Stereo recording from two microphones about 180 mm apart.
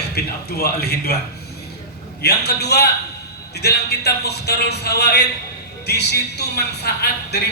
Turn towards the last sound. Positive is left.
turn(degrees=65)  # may be behind; listen again after turning